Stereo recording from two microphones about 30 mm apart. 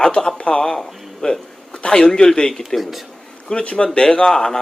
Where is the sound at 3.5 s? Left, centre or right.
Left.